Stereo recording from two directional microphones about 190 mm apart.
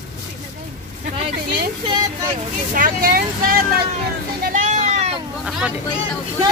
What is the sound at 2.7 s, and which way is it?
Speech, 50° right (ahead or behind).